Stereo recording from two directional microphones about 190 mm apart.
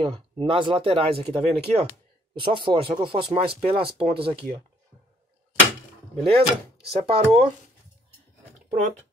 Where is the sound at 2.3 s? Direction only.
25° right (ahead or behind).